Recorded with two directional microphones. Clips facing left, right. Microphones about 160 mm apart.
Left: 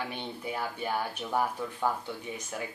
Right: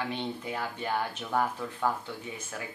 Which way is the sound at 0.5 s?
10° left (ahead or behind).